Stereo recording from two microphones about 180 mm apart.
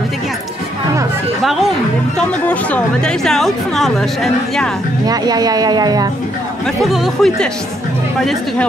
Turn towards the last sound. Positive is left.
turn(degrees=0)  # may be behind; listen again after turning